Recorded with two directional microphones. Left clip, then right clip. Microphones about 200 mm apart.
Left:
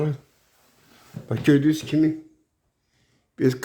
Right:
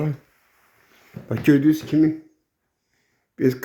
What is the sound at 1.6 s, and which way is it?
Speech, 15° right (ahead or behind).